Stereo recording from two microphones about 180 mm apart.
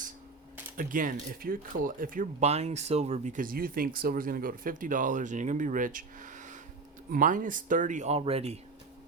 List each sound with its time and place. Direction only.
0.8 s speech: 50° right (ahead or behind)